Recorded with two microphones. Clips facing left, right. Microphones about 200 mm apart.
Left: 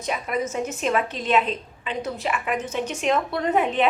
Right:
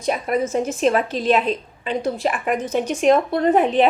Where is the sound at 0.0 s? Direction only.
40° right (ahead or behind).